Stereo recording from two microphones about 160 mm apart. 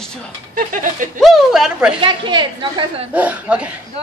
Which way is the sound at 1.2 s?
Centre (ahead or behind).